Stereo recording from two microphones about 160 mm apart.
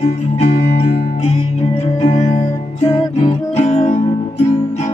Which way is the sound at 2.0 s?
45° left (ahead or behind).